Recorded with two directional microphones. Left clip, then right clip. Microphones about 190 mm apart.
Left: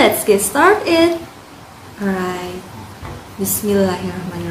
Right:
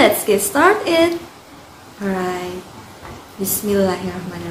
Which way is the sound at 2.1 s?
Centre (ahead or behind).